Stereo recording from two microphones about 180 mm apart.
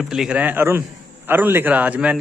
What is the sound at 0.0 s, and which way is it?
A man's voice, centre (ahead or behind).